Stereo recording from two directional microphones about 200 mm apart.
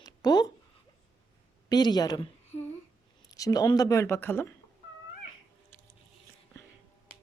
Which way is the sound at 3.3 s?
15° left (ahead or behind).